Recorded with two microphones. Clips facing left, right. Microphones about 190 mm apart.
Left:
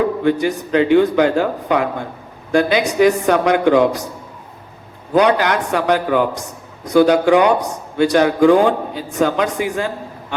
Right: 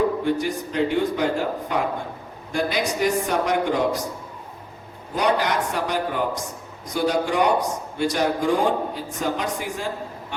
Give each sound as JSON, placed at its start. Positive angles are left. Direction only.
{"t": 0.3, "sound": "speech", "side_deg": 90}
{"t": 2.5, "sound": "a man's voice", "side_deg": 75}
{"t": 5.1, "sound": "speech", "side_deg": 80}
{"t": 6.8, "sound": "a man's voice", "side_deg": 75}